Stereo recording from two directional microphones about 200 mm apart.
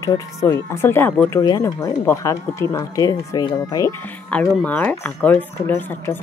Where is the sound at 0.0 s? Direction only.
15° left (ahead or behind).